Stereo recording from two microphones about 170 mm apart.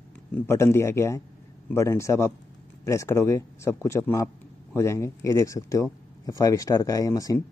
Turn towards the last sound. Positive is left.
turn(degrees=20)  # may be behind; listen again after turning